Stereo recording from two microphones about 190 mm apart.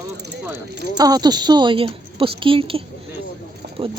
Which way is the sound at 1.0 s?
20° right (ahead or behind).